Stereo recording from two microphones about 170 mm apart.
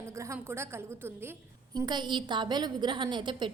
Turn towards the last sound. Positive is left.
turn(degrees=-25)  # may be behind; listen again after turning